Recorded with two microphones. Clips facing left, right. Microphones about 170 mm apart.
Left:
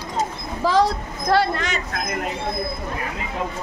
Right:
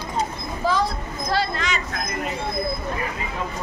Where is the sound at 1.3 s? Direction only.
60° left (ahead or behind).